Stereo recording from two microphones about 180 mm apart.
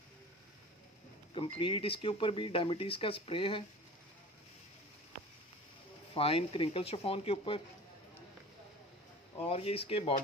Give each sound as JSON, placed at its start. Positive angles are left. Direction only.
{"t": 1.3, "sound": "speech", "side_deg": 30}
{"t": 6.1, "sound": "speech", "side_deg": 30}
{"t": 9.4, "sound": "speech", "side_deg": 35}